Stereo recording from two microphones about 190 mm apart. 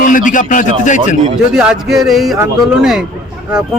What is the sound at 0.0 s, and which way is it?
Speech, 45° left (ahead or behind).